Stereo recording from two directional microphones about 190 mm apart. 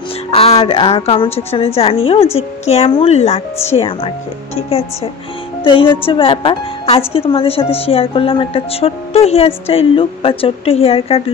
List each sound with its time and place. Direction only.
0.3 s a woman's voice: 30° left (ahead or behind)